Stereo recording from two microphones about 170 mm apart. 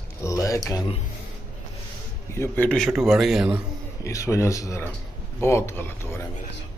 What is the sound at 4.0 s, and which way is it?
Speech, 20° left (ahead or behind).